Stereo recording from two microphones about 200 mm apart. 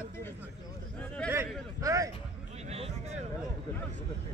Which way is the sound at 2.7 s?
30° right (ahead or behind).